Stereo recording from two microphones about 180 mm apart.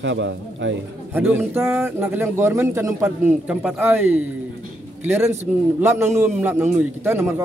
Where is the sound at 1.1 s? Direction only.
10° right (ahead or behind).